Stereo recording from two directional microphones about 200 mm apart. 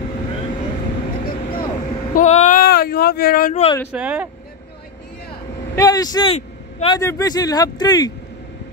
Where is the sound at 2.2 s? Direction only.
35° left (ahead or behind).